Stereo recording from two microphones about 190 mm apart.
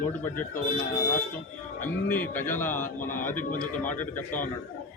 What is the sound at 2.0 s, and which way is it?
A man's voice, 10° left (ahead or behind).